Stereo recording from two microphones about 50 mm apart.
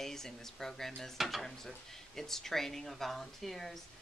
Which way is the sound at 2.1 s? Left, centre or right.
Centre.